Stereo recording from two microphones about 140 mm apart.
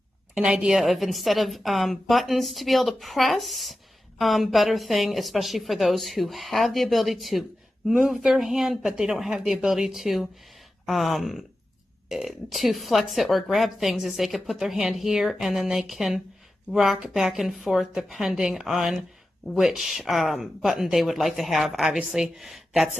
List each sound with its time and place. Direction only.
0.3 s a woman's voice: 5° right (ahead or behind)